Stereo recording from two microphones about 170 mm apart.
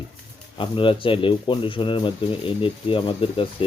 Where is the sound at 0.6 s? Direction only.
30° left (ahead or behind).